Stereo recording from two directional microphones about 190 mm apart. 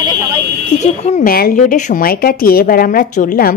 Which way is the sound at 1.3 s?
50° left (ahead or behind).